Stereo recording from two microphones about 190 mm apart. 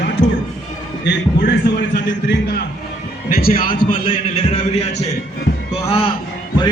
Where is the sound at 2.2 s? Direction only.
60° left (ahead or behind); by 4.0 s 45° left (ahead or behind).